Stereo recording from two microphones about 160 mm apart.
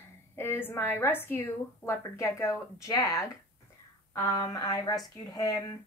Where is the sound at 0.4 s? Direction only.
15° left (ahead or behind).